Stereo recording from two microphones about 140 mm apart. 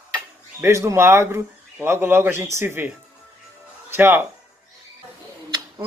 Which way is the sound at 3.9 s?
15° right (ahead or behind).